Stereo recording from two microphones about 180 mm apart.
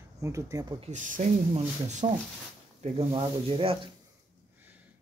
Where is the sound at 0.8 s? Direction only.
45° right (ahead or behind); by 3.9 s 30° right (ahead or behind).